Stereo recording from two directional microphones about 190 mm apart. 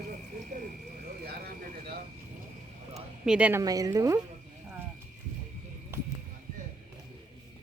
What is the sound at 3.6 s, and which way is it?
Speech, 20° right (ahead or behind).